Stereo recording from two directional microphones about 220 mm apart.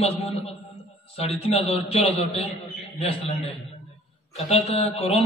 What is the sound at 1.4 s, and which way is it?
A man's voice, 25° left (ahead or behind).